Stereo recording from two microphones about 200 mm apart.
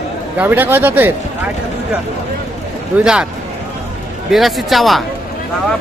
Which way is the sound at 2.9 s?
5° right (ahead or behind).